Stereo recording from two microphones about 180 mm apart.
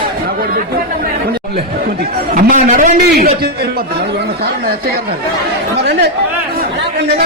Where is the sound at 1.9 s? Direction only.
55° right (ahead or behind).